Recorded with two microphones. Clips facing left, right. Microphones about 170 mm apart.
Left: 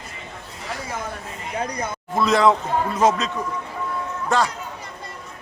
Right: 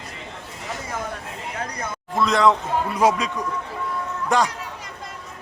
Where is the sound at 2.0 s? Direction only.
Centre (ahead or behind).